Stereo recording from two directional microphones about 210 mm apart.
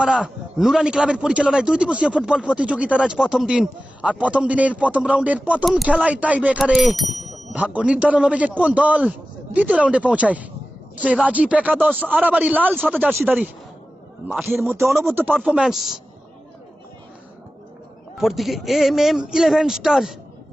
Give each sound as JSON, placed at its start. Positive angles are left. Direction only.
{"t": 0.0, "sound": "a man's voice", "side_deg": -5}
{"t": 18.2, "sound": "a man's voice", "side_deg": 0}